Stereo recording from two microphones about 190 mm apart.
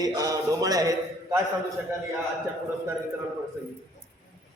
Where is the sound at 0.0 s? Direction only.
20° right (ahead or behind).